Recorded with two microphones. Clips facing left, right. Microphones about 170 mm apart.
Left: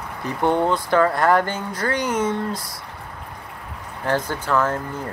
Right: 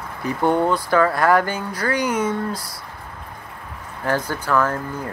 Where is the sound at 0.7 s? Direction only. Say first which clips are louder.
Even; 20° left (ahead or behind).